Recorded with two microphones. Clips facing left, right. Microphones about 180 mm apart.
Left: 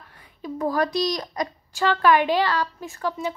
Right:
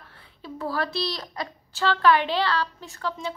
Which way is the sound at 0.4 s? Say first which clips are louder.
Left 5 dB; 15° left (ahead or behind).